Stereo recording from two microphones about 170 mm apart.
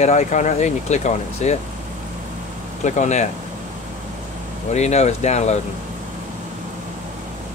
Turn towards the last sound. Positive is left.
turn(degrees=40)  # may be behind; listen again after turning